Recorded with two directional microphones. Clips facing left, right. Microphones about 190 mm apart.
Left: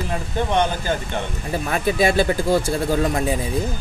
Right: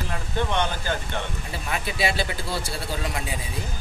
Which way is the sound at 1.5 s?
45° left (ahead or behind).